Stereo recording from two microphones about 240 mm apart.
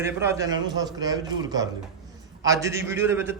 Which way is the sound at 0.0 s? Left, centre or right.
Centre.